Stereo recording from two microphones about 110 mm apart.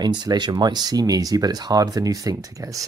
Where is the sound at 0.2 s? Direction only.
40° right (ahead or behind).